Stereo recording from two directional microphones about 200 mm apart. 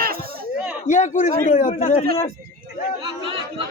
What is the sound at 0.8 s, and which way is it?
A man's voice, 40° left (ahead or behind).